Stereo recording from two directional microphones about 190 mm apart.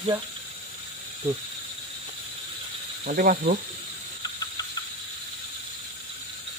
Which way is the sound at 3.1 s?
50° right (ahead or behind).